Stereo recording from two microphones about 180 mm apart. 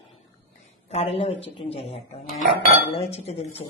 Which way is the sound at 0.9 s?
35° left (ahead or behind).